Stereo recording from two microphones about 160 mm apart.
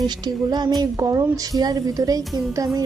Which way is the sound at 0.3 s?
25° right (ahead or behind).